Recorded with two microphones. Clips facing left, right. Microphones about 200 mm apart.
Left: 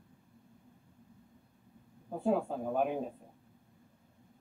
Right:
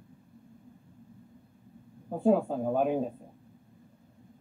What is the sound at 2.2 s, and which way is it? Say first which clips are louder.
Speech: right 6 dB; 35° right (ahead or behind).